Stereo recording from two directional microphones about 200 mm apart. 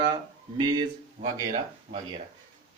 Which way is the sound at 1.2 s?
40° right (ahead or behind).